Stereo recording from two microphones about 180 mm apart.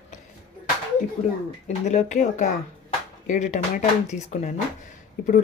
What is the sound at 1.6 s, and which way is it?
Speech, 40° left (ahead or behind).